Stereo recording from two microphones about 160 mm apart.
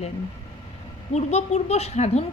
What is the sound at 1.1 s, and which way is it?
A woman's voice, 45° left (ahead or behind).